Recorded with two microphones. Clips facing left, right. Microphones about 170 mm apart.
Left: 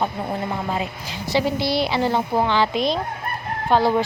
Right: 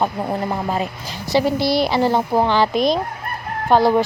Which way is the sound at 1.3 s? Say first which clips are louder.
Right 4 dB; 40° right (ahead or behind).